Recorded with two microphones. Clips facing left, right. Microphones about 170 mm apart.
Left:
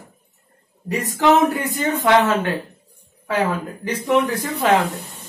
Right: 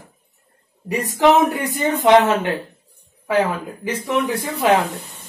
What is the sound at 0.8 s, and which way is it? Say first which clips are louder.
Speech: right 2 dB; 15° right (ahead or behind).